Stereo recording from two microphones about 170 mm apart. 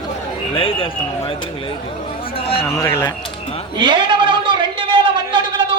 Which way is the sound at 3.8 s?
30° right (ahead or behind).